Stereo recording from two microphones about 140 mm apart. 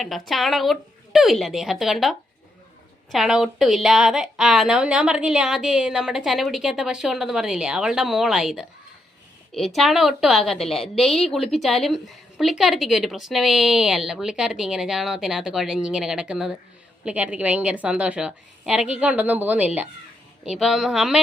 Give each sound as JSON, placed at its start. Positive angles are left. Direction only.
{"t": 0.0, "sound": "a woman's voice", "side_deg": 0}